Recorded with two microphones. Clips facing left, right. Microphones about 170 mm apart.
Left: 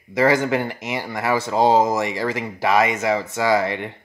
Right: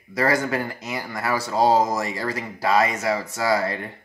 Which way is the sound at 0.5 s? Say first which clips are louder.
Left 4 dB; 25° left (ahead or behind).